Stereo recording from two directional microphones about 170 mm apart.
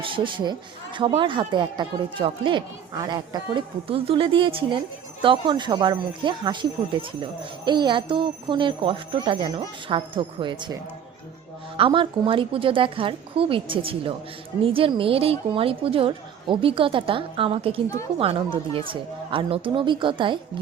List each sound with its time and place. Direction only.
0.0 s speech: 30° right (ahead or behind)
11.8 s a woman's voice: 30° right (ahead or behind)